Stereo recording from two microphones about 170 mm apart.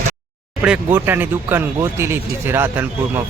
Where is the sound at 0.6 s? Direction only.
10° right (ahead or behind).